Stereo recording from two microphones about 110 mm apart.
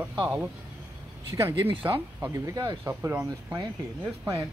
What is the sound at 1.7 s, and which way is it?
Speech, 50° right (ahead or behind).